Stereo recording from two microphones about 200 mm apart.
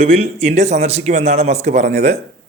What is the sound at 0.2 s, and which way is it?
Speech, 30° right (ahead or behind).